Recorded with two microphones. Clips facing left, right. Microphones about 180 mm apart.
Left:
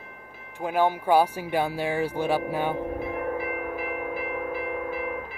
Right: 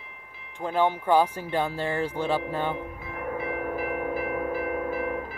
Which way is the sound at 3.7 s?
40° right (ahead or behind).